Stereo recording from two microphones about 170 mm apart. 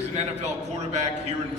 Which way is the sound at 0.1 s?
40° right (ahead or behind).